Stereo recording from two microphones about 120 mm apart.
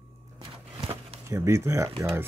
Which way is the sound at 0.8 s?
50° right (ahead or behind).